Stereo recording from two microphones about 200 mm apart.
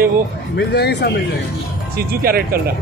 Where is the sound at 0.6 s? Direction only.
55° left (ahead or behind).